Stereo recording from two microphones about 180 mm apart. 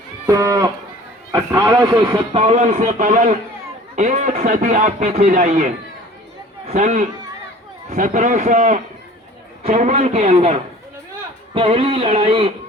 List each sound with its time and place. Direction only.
0.3 s a man's voice: 15° right (ahead or behind)